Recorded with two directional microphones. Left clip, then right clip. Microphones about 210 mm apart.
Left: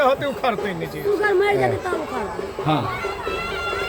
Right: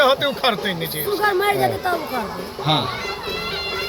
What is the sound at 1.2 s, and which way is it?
Speech, 50° right (ahead or behind).